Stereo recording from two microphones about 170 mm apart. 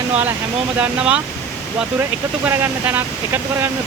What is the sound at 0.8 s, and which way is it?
Speech, 5° right (ahead or behind).